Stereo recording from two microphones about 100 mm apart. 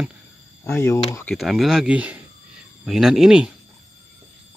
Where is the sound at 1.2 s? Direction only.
Centre (ahead or behind).